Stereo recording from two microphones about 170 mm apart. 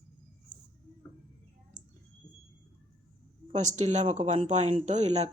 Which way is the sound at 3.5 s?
45° right (ahead or behind).